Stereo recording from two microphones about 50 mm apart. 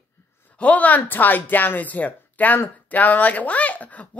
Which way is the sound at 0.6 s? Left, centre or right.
Left.